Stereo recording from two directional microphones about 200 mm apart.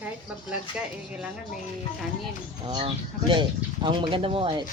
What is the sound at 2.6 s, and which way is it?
Speech, 25° right (ahead or behind).